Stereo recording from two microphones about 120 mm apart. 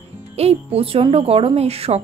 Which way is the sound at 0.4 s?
60° right (ahead or behind).